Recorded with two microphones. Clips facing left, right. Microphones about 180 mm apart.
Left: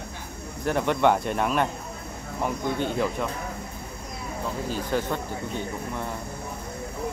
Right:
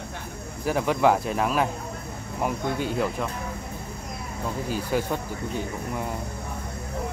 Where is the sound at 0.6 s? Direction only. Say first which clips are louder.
Even; 5° right (ahead or behind).